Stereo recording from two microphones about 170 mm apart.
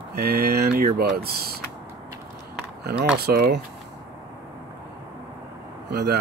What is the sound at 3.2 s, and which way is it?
Speech, 65° right (ahead or behind).